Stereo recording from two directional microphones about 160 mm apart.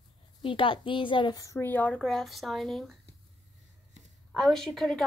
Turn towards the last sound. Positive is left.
turn(degrees=0)  # may be behind; listen again after turning